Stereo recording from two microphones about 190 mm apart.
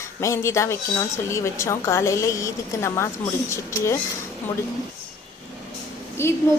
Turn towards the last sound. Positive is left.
turn(degrees=15)  # may be behind; listen again after turning